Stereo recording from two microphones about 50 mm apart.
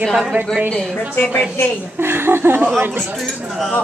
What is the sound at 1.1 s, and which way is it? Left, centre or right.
Speech, left.